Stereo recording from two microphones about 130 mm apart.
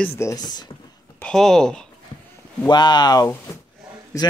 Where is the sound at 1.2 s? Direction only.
5° left (ahead or behind).